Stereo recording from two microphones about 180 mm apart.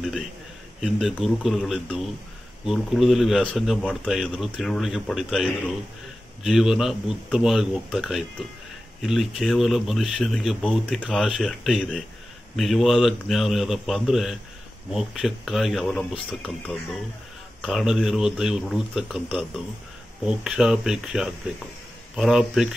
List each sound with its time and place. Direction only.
0.7 s speech: centre (ahead or behind)